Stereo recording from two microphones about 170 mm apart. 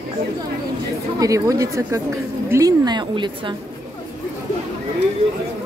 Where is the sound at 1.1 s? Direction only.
20° right (ahead or behind).